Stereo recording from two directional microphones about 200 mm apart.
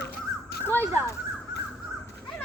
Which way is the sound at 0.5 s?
55° left (ahead or behind).